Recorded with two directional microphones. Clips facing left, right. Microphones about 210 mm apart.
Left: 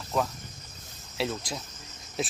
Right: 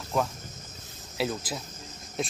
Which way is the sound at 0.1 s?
Centre (ahead or behind).